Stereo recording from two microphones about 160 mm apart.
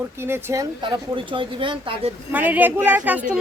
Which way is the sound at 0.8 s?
30° right (ahead or behind).